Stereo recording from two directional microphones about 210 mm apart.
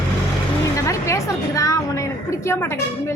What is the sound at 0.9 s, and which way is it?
A woman's voice, 15° left (ahead or behind).